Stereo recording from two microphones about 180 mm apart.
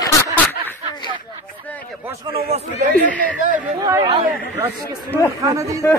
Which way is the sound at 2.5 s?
40° right (ahead or behind).